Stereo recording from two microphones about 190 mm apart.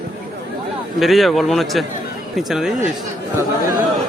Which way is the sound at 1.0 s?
Centre (ahead or behind).